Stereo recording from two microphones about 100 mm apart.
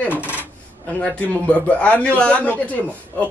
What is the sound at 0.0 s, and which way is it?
Coin, 20° left (ahead or behind).